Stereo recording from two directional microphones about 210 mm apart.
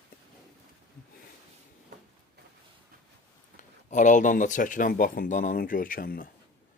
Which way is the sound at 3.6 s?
35° left (ahead or behind).